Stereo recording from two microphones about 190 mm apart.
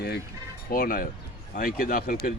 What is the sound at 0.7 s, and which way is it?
Speech, 50° left (ahead or behind).